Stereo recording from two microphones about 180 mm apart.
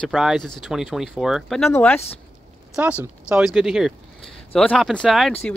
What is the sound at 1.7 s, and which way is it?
Speech, 10° left (ahead or behind).